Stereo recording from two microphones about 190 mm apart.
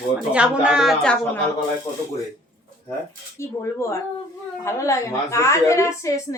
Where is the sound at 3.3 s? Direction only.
15° left (ahead or behind).